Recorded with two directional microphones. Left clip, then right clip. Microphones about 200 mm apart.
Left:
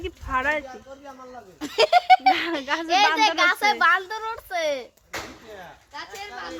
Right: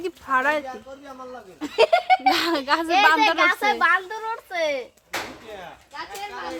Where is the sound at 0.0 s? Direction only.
10° right (ahead or behind).